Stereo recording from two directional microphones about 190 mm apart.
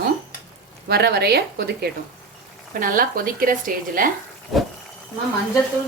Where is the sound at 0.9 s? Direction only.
55° right (ahead or behind).